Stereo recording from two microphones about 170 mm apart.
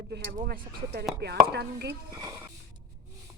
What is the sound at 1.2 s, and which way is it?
Speech, 80° right.